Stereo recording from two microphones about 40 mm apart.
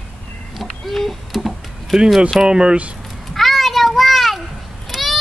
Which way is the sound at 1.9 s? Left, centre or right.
Centre.